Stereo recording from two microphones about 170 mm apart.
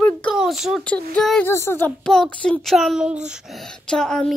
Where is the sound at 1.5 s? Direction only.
15° left (ahead or behind).